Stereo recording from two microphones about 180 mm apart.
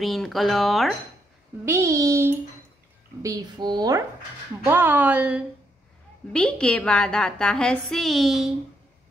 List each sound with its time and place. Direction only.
0.0 s a woman's voice: centre (ahead or behind)
1.7 s a woman's voice: 15° right (ahead or behind)
4.6 s speech: 10° right (ahead or behind)
6.3 s a woman's voice: 5° left (ahead or behind)